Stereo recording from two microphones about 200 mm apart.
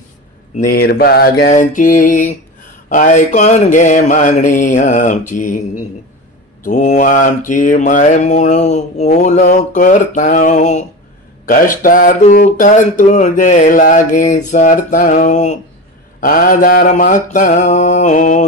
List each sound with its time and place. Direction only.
0.7 s mantra: 50° left (ahead or behind)
6.6 s mantra: 35° left (ahead or behind)